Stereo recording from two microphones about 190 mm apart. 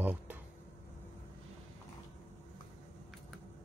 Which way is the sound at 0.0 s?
10° right (ahead or behind).